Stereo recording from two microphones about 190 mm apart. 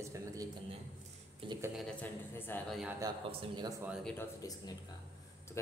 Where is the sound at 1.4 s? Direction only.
25° right (ahead or behind).